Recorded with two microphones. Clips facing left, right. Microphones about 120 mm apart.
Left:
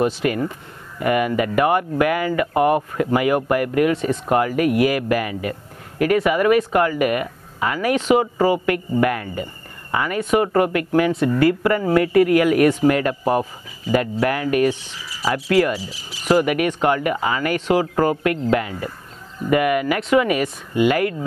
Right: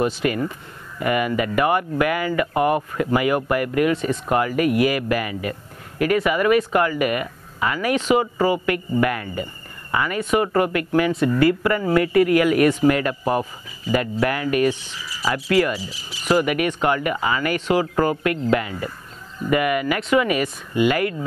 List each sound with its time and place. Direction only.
0.0 s speech: 45° left (ahead or behind)